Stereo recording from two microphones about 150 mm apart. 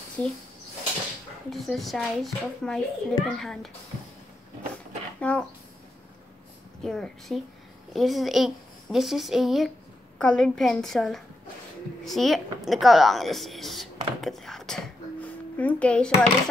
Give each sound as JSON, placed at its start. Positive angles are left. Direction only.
{"t": 0.2, "sound": "speech", "side_deg": 10}
{"t": 1.5, "sound": "a child's voice", "side_deg": 0}
{"t": 5.2, "sound": "speech", "side_deg": 10}
{"t": 6.8, "sound": "a child's voice", "side_deg": 5}